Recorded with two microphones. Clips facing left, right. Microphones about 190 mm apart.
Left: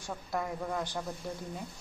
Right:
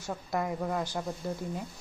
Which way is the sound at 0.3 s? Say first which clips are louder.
Right 3 dB; 10° right (ahead or behind).